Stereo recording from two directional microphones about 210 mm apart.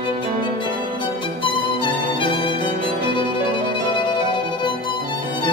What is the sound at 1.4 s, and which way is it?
Music, 25° left (ahead or behind).